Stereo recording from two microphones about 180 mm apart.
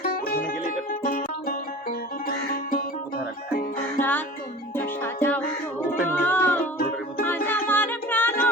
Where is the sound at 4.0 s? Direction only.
10° left (ahead or behind).